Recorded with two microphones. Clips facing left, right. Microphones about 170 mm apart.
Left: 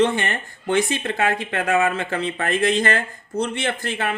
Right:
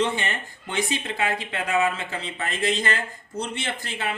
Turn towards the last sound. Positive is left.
turn(degrees=55)  # may be behind; listen again after turning